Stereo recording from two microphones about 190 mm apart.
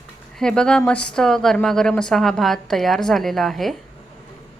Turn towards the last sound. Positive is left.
turn(degrees=0)  # may be behind; listen again after turning